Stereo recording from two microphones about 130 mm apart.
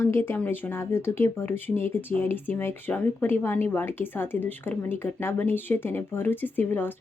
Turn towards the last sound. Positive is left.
turn(degrees=15)  # may be behind; listen again after turning